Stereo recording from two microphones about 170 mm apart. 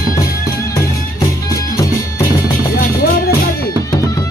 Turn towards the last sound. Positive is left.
turn(degrees=60)  # may be behind; listen again after turning